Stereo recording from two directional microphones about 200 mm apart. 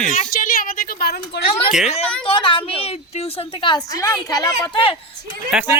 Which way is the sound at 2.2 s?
25° left (ahead or behind).